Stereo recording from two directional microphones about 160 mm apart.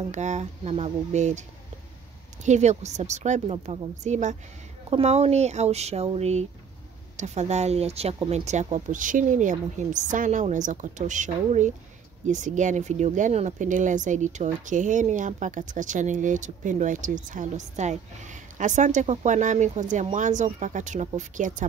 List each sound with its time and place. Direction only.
0.1 s speech: 45° right (ahead or behind)
2.4 s speech: 45° right (ahead or behind)